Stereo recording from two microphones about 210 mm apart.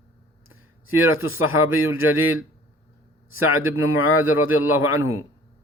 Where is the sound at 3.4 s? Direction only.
80° left.